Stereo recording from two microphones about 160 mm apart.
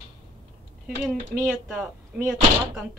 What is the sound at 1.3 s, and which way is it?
Speech, 10° right (ahead or behind).